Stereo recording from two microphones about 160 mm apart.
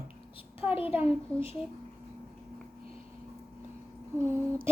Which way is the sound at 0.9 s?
10° right (ahead or behind).